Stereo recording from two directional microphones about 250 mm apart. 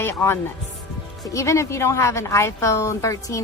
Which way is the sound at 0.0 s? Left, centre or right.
Centre.